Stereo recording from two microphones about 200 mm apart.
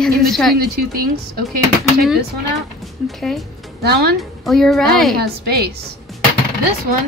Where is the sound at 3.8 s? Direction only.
55° right (ahead or behind).